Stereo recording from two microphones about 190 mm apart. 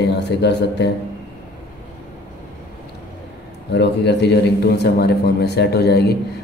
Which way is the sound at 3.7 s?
60° left (ahead or behind).